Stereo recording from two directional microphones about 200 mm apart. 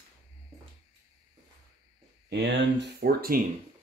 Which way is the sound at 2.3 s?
60° right (ahead or behind).